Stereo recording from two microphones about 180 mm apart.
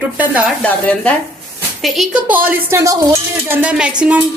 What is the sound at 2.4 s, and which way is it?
A woman's voice, 15° right (ahead or behind).